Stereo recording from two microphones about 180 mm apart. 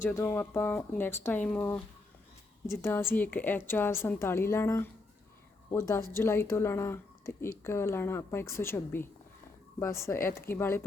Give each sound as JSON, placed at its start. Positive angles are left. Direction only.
{"t": 0.0, "sound": "a woman's voice", "side_deg": 15}